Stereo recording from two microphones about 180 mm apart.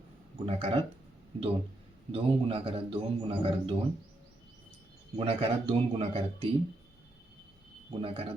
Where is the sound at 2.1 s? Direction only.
30° right (ahead or behind).